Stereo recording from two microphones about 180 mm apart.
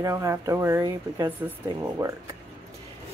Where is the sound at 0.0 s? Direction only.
15° right (ahead or behind).